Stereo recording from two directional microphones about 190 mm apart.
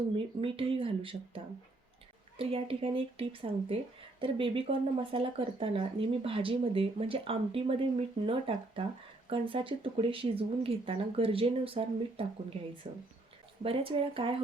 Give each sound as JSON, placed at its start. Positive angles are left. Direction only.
{"t": 0.4, "sound": "speech", "side_deg": -30}
{"t": 2.4, "sound": "speech", "side_deg": -30}